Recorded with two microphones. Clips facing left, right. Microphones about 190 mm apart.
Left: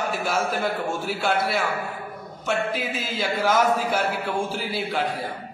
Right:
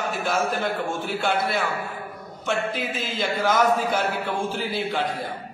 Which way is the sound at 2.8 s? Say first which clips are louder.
Even; 5° left (ahead or behind).